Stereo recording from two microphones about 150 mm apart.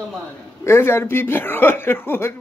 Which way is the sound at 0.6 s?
15° left (ahead or behind).